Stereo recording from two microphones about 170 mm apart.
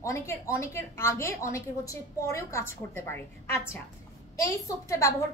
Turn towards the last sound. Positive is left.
turn(degrees=20)  # may be behind; listen again after turning